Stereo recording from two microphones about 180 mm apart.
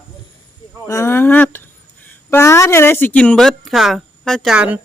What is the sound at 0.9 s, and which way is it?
Speech, 15° left (ahead or behind).